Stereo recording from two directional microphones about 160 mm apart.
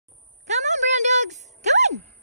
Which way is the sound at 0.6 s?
45° right (ahead or behind).